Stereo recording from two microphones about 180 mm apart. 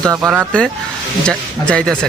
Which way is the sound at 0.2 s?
Centre (ahead or behind).